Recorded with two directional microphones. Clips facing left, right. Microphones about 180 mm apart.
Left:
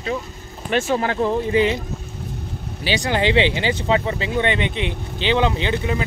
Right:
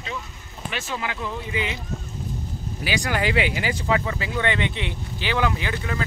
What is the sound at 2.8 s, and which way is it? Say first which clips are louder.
Speech: left 4 dB; 25° left (ahead or behind).